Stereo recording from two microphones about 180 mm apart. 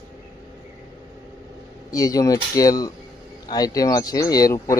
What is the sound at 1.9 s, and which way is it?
Speech, 20° left (ahead or behind).